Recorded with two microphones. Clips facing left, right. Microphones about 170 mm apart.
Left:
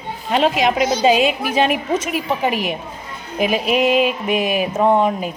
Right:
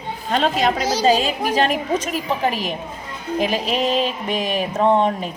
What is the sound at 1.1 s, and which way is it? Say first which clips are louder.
Speech: left 2 dB; 35° right (ahead or behind).